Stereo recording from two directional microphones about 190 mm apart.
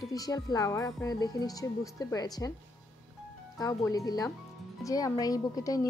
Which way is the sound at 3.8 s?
20° left (ahead or behind).